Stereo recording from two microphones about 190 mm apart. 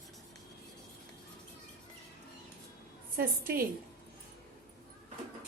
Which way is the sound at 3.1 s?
50° right (ahead or behind).